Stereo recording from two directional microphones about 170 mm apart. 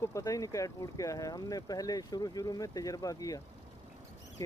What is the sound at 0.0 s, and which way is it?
Speech, 20° left (ahead or behind).